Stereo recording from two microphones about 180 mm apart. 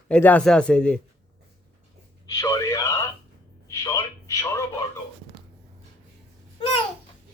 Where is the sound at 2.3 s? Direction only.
15° left (ahead or behind).